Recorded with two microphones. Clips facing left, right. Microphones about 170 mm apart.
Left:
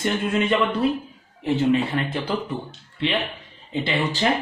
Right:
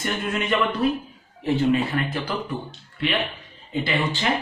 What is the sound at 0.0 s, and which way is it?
Speech, 30° left (ahead or behind).